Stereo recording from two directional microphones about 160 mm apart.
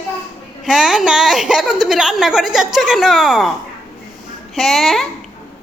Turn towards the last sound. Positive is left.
turn(degrees=0)  # may be behind; listen again after turning